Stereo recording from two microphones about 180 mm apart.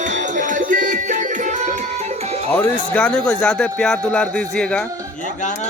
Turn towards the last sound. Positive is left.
turn(degrees=5)  # may be behind; listen again after turning